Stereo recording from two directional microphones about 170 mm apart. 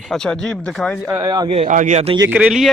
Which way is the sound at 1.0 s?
20° right (ahead or behind).